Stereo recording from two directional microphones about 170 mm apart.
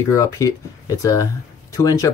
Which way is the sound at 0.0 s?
20° left (ahead or behind).